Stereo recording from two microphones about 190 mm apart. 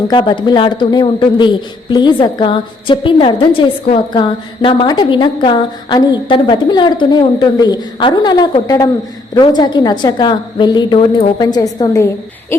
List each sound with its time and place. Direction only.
0.1 s a woman's voice: 25° left (ahead or behind)